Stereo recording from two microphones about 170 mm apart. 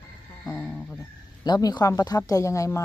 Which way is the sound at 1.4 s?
25° left (ahead or behind).